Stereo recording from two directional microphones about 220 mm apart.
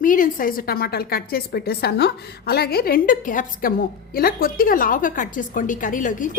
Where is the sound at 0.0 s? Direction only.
40° left (ahead or behind).